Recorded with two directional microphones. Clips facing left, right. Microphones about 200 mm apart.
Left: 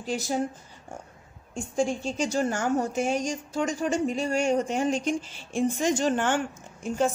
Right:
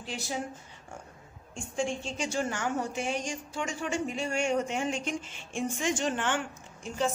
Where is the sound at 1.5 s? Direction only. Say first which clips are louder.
Left 5 dB; 40° left (ahead or behind).